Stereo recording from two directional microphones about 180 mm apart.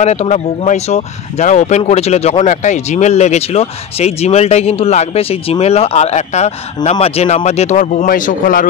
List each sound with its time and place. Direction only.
0.0 s speech: 40° left (ahead or behind)